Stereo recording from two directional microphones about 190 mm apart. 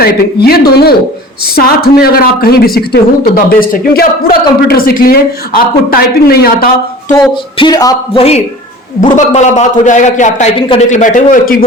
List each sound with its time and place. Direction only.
0.0 s a woman's voice: 55° left (ahead or behind)
7.6 s a man's voice: 20° left (ahead or behind)
9.0 s a man's voice: 40° left (ahead or behind)